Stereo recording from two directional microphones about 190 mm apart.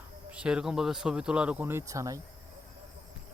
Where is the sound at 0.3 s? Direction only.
5° right (ahead or behind).